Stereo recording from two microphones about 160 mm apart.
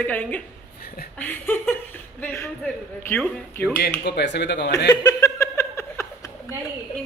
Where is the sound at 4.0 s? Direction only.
90° left.